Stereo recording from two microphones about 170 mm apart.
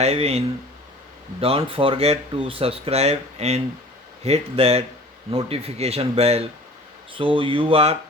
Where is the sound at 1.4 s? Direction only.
35° right (ahead or behind).